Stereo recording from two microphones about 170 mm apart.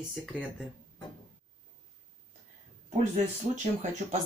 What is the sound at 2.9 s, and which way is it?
Speech, 40° right (ahead or behind).